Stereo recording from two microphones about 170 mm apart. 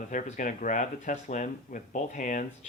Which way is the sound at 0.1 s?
50° left (ahead or behind).